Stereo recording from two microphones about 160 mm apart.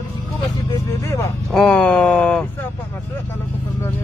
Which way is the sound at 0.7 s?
20° left (ahead or behind).